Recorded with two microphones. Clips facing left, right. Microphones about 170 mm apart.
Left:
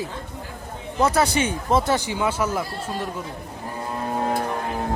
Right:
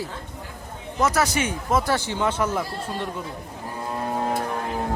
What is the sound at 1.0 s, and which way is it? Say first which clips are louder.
Speech: left 2 dB; 30° left (ahead or behind).